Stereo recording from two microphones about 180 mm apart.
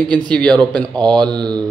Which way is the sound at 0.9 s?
25° right (ahead or behind).